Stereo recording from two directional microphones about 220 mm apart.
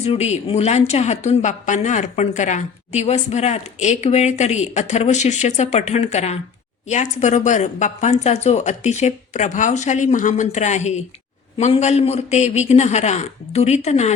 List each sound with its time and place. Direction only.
0.0 s a woman's voice: 30° left (ahead or behind)